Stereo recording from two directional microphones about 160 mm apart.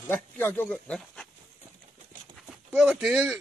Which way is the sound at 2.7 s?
5° right (ahead or behind).